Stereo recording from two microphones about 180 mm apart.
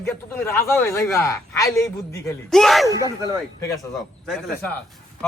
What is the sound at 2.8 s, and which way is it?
Speech, 20° right (ahead or behind).